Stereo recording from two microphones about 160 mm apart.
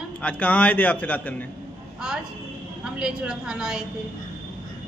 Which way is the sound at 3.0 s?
5° right (ahead or behind).